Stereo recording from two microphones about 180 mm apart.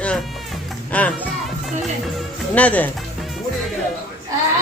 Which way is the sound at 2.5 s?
10° left (ahead or behind).